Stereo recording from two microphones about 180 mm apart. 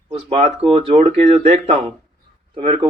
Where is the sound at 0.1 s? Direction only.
30° right (ahead or behind).